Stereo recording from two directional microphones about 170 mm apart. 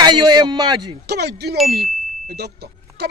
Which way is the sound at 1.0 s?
70° right (ahead or behind).